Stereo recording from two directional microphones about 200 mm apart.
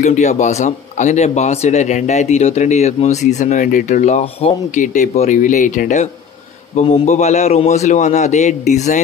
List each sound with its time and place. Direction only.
0.0 s speech: 35° left (ahead or behind)